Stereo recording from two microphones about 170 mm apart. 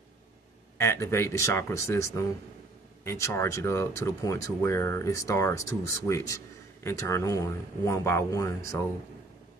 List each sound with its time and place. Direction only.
0.7 s speech: 15° left (ahead or behind)